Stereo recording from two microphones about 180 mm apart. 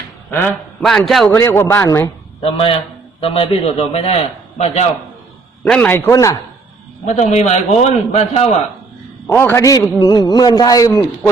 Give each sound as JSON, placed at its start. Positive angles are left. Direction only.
{"t": 0.3, "sound": "a man's voice", "side_deg": 10}
{"t": 1.3, "sound": "speech", "side_deg": 15}
{"t": 2.4, "sound": "a man's voice", "side_deg": 30}
{"t": 5.6, "sound": "speech", "side_deg": 5}
{"t": 7.0, "sound": "a man's voice", "side_deg": 40}
{"t": 9.2, "sound": "speech", "side_deg": 10}